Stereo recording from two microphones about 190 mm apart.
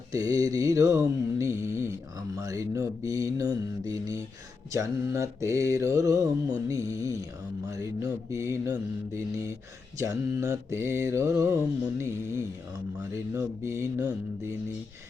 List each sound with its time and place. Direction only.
0.1 s mantra: 20° right (ahead or behind)